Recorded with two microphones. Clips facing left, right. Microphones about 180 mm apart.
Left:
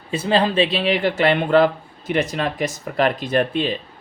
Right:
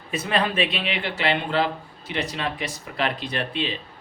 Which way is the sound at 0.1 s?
30° left (ahead or behind).